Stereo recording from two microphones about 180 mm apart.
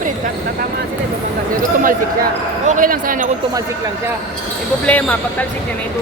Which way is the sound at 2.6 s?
50° right (ahead or behind).